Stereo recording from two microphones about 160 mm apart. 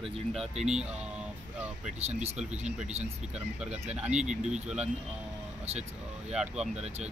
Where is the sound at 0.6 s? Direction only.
5° right (ahead or behind).